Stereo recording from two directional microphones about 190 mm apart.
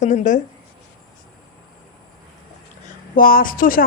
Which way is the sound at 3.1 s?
50° left (ahead or behind).